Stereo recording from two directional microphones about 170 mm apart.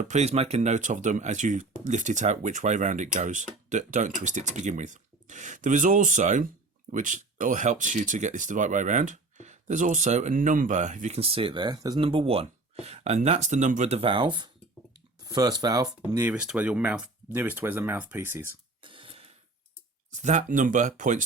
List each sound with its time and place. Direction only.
0.1 s speech: 40° right (ahead or behind); by 15.9 s 25° right (ahead or behind)
16.1 s speech: 10° right (ahead or behind)
18.8 s a sound: 30° right (ahead or behind)
20.1 s speech: 45° right (ahead or behind)